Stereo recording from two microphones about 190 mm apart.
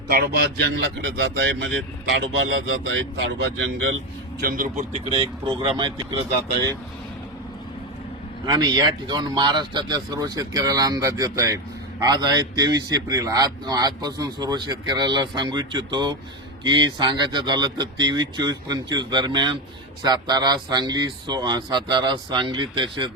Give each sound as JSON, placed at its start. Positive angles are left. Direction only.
{"t": 0.1, "sound": "speech", "side_deg": -55}
{"t": 4.4, "sound": "speech", "side_deg": -50}
{"t": 8.4, "sound": "a man's voice", "side_deg": -20}